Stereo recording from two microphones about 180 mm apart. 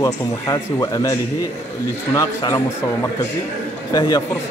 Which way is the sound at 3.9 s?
25° left (ahead or behind).